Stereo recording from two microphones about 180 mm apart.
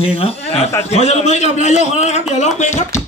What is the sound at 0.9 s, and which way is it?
A man's voice, 40° left (ahead or behind).